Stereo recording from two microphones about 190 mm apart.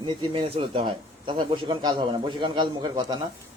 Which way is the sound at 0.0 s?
25° right (ahead or behind).